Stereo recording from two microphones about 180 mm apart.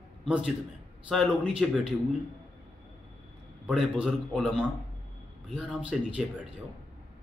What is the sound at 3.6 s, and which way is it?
Speech, 5° right (ahead or behind).